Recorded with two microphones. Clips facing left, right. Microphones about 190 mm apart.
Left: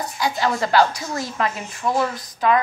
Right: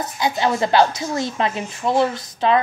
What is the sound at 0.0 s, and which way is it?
A woman's voice, 20° right (ahead or behind).